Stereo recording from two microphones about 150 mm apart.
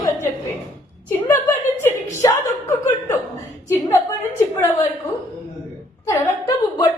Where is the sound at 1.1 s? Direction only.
15° left (ahead or behind).